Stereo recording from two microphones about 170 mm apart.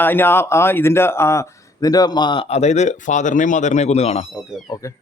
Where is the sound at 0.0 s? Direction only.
10° left (ahead or behind); by 4.3 s 35° left (ahead or behind).